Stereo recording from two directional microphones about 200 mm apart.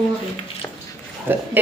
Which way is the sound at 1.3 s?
10° right (ahead or behind).